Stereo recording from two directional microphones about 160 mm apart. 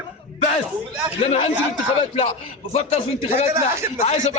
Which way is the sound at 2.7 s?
45° left (ahead or behind).